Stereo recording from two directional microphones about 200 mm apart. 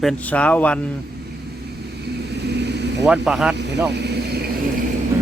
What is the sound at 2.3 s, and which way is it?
Vehicle, 55° right (ahead or behind).